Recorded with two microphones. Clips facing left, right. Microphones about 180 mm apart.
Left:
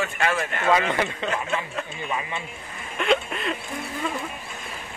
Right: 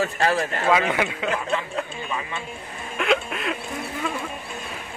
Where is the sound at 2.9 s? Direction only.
Centre (ahead or behind).